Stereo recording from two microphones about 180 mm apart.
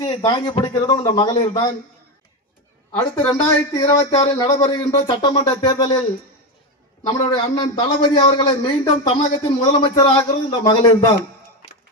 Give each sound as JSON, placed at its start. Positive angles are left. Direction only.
{"t": 0.0, "sound": "a man's voice", "side_deg": 25}
{"t": 3.2, "sound": "a man's voice", "side_deg": 5}
{"t": 3.7, "sound": "a man's voice", "side_deg": 30}
{"t": 7.0, "sound": "a man's voice", "side_deg": 25}